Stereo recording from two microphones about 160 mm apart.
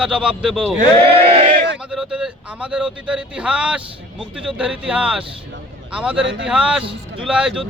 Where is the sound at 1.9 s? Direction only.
5° right (ahead or behind).